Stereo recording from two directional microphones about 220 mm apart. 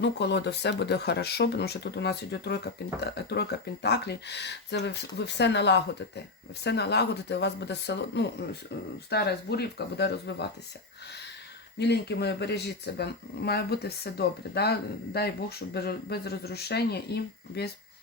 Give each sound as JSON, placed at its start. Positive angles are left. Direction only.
{"t": 0.0, "sound": "speech", "side_deg": 50}
{"t": 11.8, "sound": "speech", "side_deg": 50}